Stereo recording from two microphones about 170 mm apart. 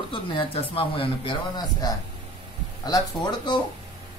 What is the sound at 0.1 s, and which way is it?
Speech, 30° left (ahead or behind).